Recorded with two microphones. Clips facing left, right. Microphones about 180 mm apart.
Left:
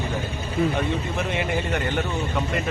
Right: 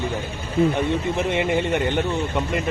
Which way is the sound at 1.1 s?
20° right (ahead or behind).